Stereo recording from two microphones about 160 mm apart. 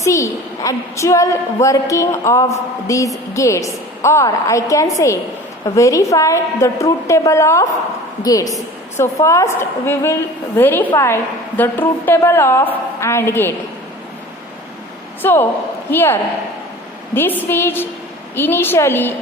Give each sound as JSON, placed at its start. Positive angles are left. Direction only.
{"t": 0.0, "sound": "a woman's voice", "side_deg": 20}
{"t": 15.2, "sound": "a woman's voice", "side_deg": 15}
{"t": 17.2, "sound": "a woman's voice", "side_deg": 15}